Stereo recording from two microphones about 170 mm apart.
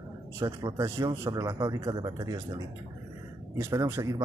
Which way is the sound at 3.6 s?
15° right (ahead or behind).